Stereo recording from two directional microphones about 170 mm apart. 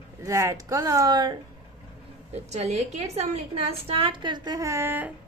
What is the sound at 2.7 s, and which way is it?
A woman's voice, 40° right (ahead or behind).